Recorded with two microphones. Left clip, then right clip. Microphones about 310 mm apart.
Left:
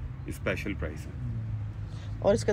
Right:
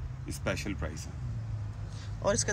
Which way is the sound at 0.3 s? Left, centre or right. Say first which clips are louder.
Left 2 dB; centre.